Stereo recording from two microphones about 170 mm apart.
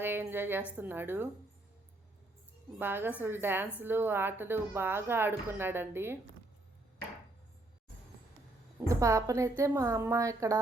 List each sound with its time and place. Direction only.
0.0 s a sound: 15° right (ahead or behind)
0.8 s a woman's voice: 10° right (ahead or behind)
2.7 s a woman's voice: 10° right (ahead or behind)
8.9 s a woman's voice: 20° right (ahead or behind)